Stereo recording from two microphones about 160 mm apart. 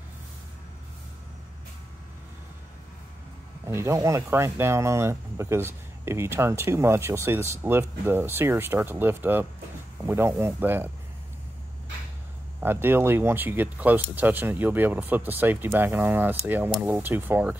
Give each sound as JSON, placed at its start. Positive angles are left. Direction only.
{"t": 3.6, "sound": "speech", "side_deg": -15}
{"t": 12.5, "sound": "speech", "side_deg": -15}